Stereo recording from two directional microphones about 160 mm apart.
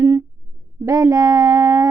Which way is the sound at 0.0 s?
20° right (ahead or behind).